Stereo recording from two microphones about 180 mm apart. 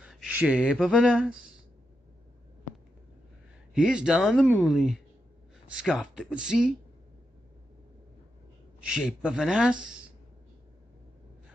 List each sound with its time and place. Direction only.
0.0 s speech: 5° right (ahead or behind)
3.7 s speech: 5° right (ahead or behind)
8.8 s speech: 5° right (ahead or behind)